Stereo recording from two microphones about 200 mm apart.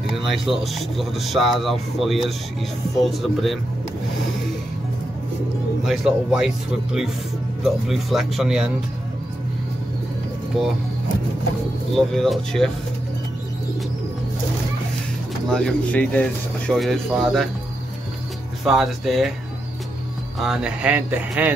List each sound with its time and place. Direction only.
0.1 s speech: centre (ahead or behind)
5.9 s speech: 5° right (ahead or behind)
11.9 s speech: centre (ahead or behind)
15.5 s speech: 5° left (ahead or behind)
18.6 s speech: centre (ahead or behind)
20.3 s speech: 5° right (ahead or behind)